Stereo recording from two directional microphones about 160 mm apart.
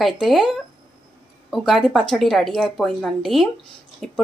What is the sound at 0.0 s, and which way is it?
A woman's voice, centre (ahead or behind).